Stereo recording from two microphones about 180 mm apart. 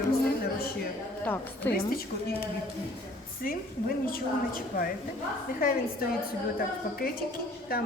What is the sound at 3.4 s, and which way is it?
A woman's voice, 50° left (ahead or behind).